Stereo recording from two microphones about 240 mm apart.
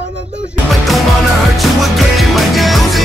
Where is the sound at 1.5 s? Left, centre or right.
Centre.